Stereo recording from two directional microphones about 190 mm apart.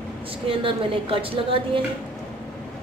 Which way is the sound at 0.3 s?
30° right (ahead or behind).